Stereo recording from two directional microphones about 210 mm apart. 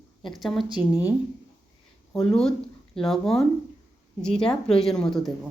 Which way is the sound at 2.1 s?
5° left (ahead or behind).